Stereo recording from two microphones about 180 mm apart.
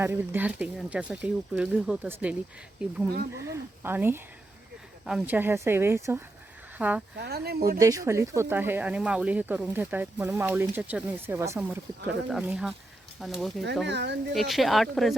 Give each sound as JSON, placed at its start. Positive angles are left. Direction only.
{"t": 0.0, "sound": "speech", "side_deg": -10}
{"t": 3.5, "sound": "speech", "side_deg": -10}
{"t": 7.2, "sound": "speech", "side_deg": -65}
{"t": 7.8, "sound": "speech", "side_deg": -20}
{"t": 13.8, "sound": "speech", "side_deg": -75}
{"t": 14.3, "sound": "speech", "side_deg": 0}